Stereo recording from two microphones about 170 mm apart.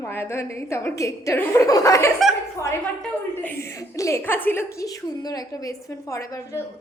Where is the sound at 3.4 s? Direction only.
15° left (ahead or behind).